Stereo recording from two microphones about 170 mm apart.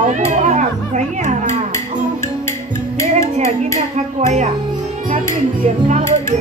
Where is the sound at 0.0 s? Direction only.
45° right (ahead or behind).